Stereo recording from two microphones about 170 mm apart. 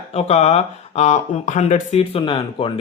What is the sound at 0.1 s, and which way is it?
Speech, 35° left (ahead or behind).